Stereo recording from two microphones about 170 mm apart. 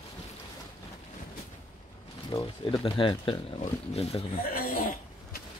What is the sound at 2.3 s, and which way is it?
Speech, 35° left (ahead or behind).